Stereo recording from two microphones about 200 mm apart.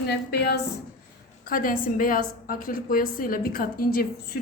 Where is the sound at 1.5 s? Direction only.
45° left (ahead or behind).